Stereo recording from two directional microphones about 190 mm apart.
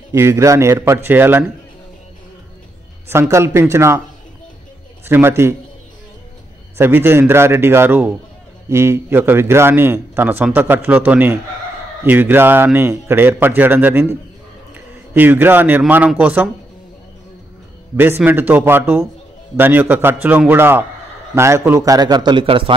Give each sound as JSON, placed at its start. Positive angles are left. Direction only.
{"t": 0.1, "sound": "a man's voice", "side_deg": -15}
{"t": 3.1, "sound": "a man's voice", "side_deg": -15}
{"t": 5.0, "sound": "a man's voice", "side_deg": -10}
{"t": 6.8, "sound": "a man's voice", "side_deg": -10}
{"t": 15.1, "sound": "a man's voice", "side_deg": -10}
{"t": 17.9, "sound": "a man's voice", "side_deg": -10}